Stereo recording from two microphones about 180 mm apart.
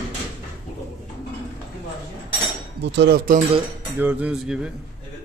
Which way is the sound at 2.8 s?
70° right (ahead or behind).